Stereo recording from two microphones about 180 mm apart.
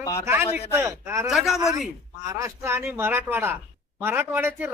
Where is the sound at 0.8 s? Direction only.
15° right (ahead or behind).